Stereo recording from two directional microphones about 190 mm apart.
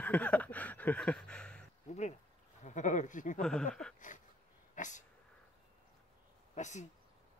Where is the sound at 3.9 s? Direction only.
40° left (ahead or behind).